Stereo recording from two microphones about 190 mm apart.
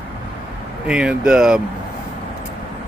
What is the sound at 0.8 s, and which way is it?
Speech, 5° right (ahead or behind).